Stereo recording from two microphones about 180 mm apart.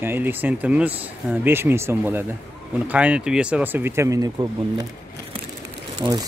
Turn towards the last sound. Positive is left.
turn(degrees=-20)  # may be behind; listen again after turning